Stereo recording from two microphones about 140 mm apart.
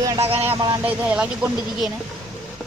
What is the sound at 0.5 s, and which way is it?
Speech, 25° right (ahead or behind).